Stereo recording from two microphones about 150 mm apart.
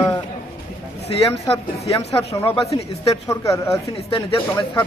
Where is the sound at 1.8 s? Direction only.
45° left (ahead or behind).